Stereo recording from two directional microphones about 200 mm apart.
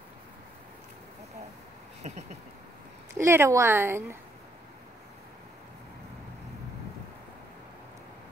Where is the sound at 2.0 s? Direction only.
35° right (ahead or behind).